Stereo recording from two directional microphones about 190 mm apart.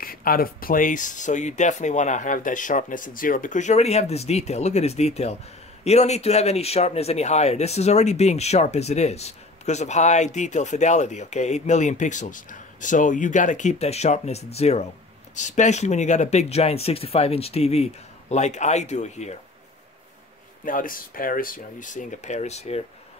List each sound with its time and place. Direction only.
0.0 s speech: 50° left (ahead or behind)
20.6 s speech: 45° left (ahead or behind)